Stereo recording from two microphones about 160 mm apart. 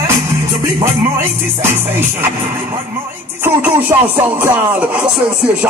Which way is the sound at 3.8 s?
15° right (ahead or behind).